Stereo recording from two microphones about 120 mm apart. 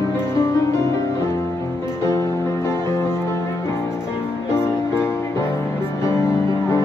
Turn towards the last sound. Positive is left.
turn(degrees=25)  # may be behind; listen again after turning